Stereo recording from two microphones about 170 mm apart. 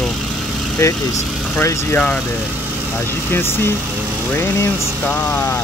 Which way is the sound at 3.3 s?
15° left (ahead or behind).